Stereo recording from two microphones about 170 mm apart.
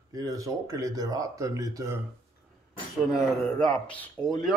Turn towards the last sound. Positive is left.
turn(degrees=5)  # may be behind; listen again after turning